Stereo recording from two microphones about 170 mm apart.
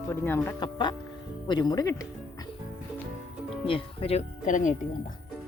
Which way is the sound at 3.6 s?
30° left (ahead or behind).